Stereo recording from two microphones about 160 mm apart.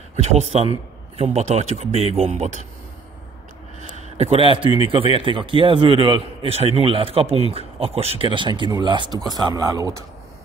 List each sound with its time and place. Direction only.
0.2 s a man's voice: 45° right (ahead or behind)
3.9 s a sound: 40° right (ahead or behind)
4.7 s a man's voice: 35° right (ahead or behind)